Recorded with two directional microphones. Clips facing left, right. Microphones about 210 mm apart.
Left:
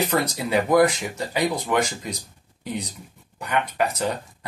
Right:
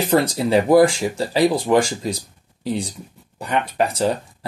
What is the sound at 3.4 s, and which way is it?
Speech, 30° right (ahead or behind).